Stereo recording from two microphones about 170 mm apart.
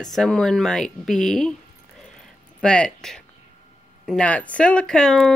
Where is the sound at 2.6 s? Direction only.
5° left (ahead or behind).